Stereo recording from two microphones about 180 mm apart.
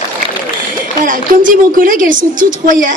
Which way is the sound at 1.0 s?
50° right (ahead or behind).